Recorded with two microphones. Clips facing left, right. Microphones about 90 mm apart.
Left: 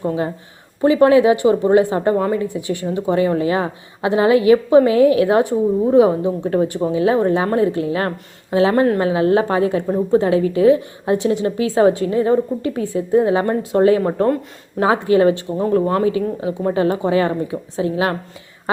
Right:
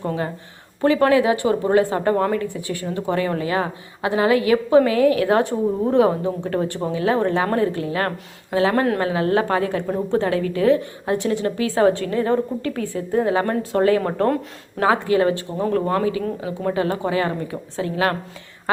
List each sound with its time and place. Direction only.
0.0 s speech: 15° left (ahead or behind)
8.7 s speech: 10° left (ahead or behind)
9.0 s speech: 20° left (ahead or behind)